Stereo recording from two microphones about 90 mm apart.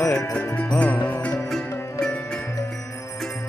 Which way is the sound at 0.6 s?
15° left (ahead or behind).